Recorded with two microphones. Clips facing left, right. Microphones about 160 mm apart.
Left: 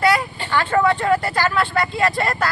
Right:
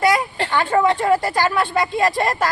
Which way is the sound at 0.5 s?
20° right (ahead or behind).